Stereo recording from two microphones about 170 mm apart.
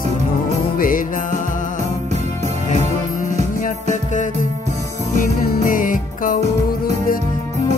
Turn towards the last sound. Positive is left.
turn(degrees=50)  # may be behind; listen again after turning